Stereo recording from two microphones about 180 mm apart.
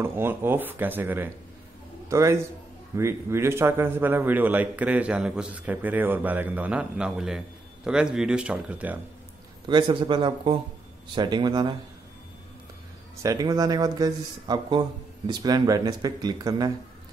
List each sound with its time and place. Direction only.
0.0 s a man's voice: 10° right (ahead or behind)
9.7 s speech: 25° right (ahead or behind)
13.2 s speech: 20° right (ahead or behind)